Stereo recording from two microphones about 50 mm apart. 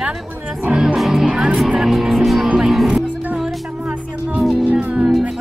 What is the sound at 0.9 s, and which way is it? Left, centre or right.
Music, centre.